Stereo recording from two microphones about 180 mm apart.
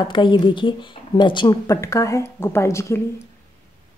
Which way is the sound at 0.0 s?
25° left (ahead or behind).